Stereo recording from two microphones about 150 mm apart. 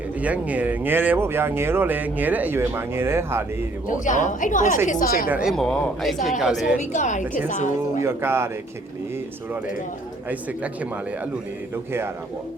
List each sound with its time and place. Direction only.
0.2 s speech: 10° right (ahead or behind)
3.8 s a woman's voice: 55° left (ahead or behind)
5.3 s speech: 5° right (ahead or behind)
6.9 s a woman's voice: 55° left (ahead or behind)
8.0 s speech: 15° right (ahead or behind)
11.9 s speech: 15° right (ahead or behind)